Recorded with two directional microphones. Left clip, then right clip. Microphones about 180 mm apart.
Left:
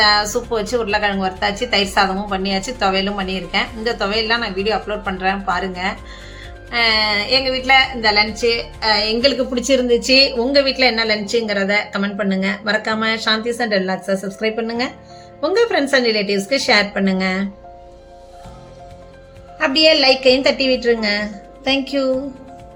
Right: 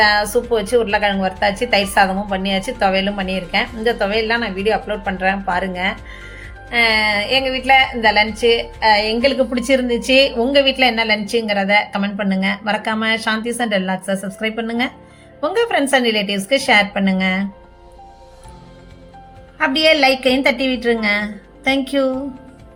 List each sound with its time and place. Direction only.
0.0 s a woman's voice: 10° right (ahead or behind)
19.5 s a woman's voice: 15° right (ahead or behind)